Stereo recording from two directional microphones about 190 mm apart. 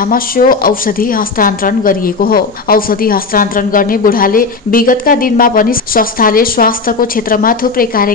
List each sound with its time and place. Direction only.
0.0 s a woman's voice: 50° left (ahead or behind)